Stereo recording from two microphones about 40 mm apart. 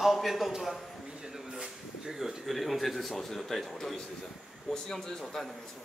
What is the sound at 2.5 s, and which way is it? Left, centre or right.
A man's voice, centre.